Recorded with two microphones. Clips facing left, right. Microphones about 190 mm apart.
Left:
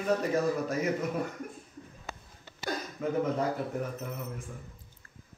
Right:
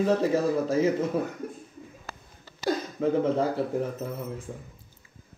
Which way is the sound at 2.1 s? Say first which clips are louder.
Left 2 dB; centre (ahead or behind).